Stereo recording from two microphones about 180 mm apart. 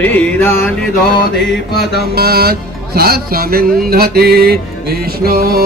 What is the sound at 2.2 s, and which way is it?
Speech, 60° right (ahead or behind).